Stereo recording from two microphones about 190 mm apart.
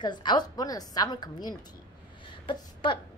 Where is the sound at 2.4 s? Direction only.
25° left (ahead or behind).